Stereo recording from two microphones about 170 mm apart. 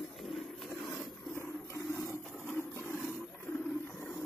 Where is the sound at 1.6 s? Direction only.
15° left (ahead or behind).